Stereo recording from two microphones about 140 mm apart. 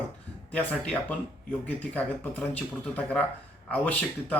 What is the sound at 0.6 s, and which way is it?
Speech, 10° left (ahead or behind).